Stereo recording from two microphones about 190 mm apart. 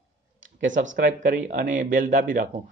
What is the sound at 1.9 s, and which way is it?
Speech, 45° right (ahead or behind).